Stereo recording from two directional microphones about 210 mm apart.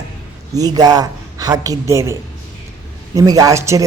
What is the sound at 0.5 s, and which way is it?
Speech, 20° right (ahead or behind).